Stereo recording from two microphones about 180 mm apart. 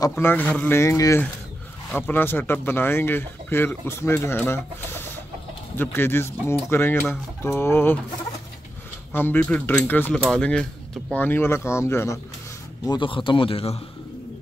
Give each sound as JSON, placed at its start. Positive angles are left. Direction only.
{"t": 0.1, "sound": "speech", "side_deg": 10}
{"t": 9.1, "sound": "speech", "side_deg": 10}
{"t": 12.8, "sound": "a man's voice", "side_deg": 25}